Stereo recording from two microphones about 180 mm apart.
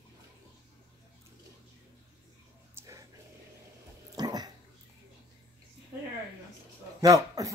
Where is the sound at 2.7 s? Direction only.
15° right (ahead or behind).